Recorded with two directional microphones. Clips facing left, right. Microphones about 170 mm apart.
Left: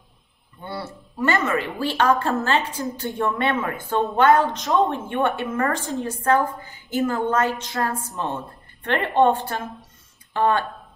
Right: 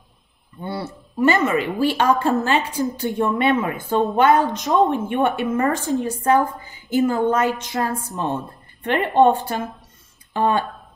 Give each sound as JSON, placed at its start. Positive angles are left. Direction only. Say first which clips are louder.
{"t": 0.7, "sound": "a woman's voice", "louder": "right 4 dB", "side_deg": -15}